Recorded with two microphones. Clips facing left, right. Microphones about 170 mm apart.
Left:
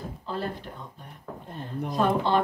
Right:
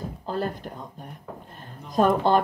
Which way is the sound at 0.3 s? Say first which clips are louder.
Right 4 dB; 45° right (ahead or behind).